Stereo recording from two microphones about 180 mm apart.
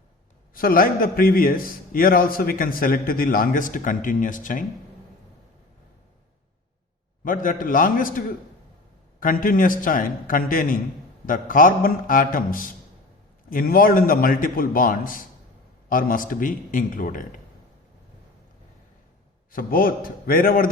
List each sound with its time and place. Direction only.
0.5 s a man's voice: 55° left (ahead or behind)
7.3 s a man's voice: 50° left (ahead or behind)
9.2 s a man's voice: 50° left (ahead or behind)
19.5 s a man's voice: 50° left (ahead or behind)